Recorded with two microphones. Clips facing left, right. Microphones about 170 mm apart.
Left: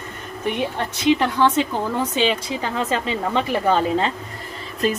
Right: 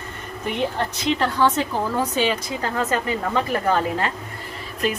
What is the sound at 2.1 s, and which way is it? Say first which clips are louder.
A woman's voice: left 1 dB; 20° left (ahead or behind).